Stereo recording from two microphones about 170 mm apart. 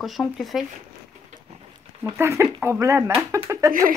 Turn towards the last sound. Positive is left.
turn(degrees=-15)  # may be behind; listen again after turning